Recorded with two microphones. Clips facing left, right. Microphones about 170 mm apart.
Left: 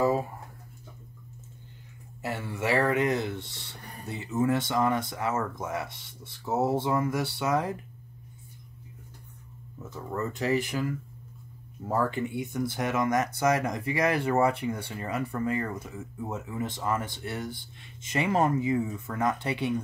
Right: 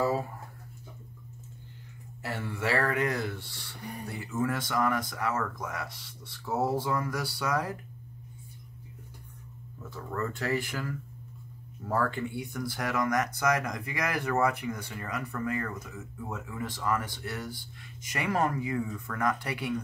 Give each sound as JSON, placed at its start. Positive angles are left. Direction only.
{"t": 2.2, "sound": "speech", "side_deg": 20}
{"t": 9.8, "sound": "speech", "side_deg": 20}